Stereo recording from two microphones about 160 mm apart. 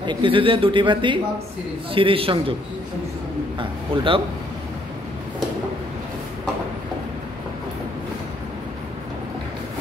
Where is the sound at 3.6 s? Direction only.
35° right (ahead or behind).